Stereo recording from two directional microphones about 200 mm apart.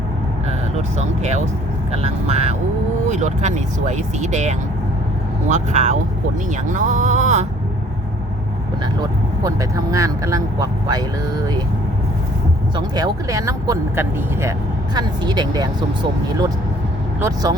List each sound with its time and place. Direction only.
0.8 s speech: 35° right (ahead or behind)
9.4 s speech: 15° right (ahead or behind)
12.7 s speech: 20° right (ahead or behind)
17.2 s speech: 15° right (ahead or behind)